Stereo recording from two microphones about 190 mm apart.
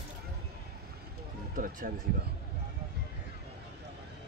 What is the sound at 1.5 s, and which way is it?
Speech, 45° right (ahead or behind).